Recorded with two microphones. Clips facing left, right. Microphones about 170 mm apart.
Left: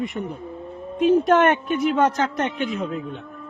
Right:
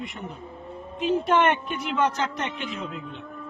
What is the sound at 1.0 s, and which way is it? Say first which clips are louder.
A woman's voice: left 6 dB; 45° left (ahead or behind).